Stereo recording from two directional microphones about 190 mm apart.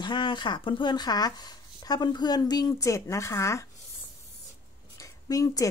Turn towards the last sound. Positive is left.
turn(degrees=20)  # may be behind; listen again after turning